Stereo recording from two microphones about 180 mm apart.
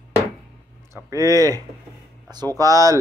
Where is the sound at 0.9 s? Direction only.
20° right (ahead or behind).